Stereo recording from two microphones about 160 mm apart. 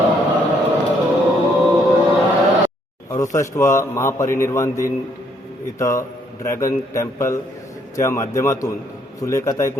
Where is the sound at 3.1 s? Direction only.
20° left (ahead or behind).